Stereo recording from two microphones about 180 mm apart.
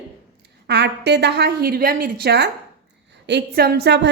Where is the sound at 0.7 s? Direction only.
70° right (ahead or behind).